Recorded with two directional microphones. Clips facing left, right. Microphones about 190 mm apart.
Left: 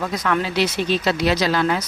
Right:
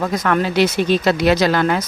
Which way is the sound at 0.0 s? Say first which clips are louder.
Right 4 dB; 50° right (ahead or behind).